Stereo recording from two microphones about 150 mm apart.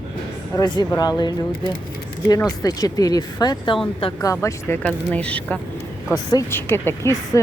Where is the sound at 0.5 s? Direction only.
25° left (ahead or behind).